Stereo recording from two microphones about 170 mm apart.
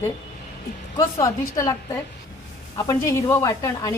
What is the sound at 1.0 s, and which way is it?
A woman's voice, 20° left (ahead or behind).